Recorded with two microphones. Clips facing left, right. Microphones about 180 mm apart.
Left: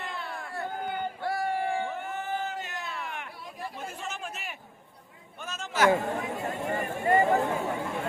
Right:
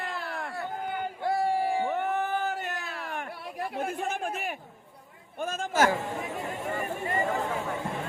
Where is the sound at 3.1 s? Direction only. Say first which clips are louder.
Right 4 dB; 45° right (ahead or behind).